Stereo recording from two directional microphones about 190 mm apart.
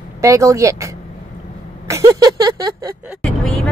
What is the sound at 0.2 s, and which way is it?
Speech, 15° right (ahead or behind).